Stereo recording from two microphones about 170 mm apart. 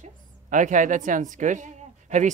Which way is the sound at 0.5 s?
50° right (ahead or behind).